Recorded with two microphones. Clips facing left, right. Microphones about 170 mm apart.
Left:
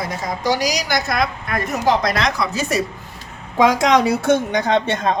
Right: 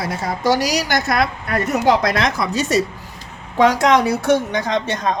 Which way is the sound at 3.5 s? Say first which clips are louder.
Even; 10° left (ahead or behind).